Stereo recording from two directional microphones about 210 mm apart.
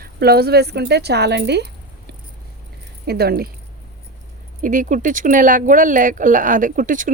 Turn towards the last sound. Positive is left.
turn(degrees=-40)  # may be behind; listen again after turning